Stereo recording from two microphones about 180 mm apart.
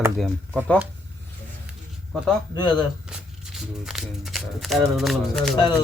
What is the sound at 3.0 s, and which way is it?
Speech, 5° right (ahead or behind).